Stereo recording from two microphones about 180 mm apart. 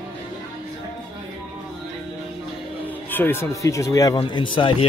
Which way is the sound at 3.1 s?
10° left (ahead or behind).